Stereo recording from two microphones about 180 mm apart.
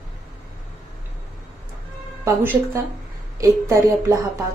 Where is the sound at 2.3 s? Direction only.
15° right (ahead or behind).